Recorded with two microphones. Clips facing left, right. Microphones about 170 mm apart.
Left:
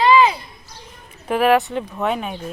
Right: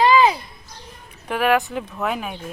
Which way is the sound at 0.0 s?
40° right (ahead or behind).